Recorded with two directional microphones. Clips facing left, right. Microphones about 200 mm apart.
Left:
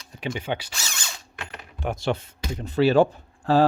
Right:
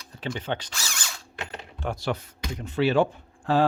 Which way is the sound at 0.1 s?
15° left (ahead or behind).